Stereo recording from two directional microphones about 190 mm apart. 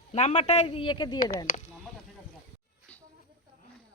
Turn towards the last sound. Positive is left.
turn(degrees=5)  # may be behind; listen again after turning